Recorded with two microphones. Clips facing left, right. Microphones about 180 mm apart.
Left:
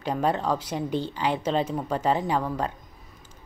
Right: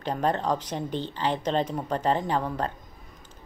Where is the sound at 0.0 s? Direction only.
10° left (ahead or behind).